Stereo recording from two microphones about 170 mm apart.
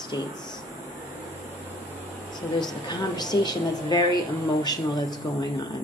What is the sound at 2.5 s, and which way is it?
A woman's voice, 25° left (ahead or behind).